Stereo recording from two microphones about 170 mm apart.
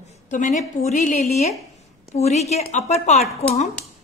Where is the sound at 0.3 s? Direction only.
45° left (ahead or behind).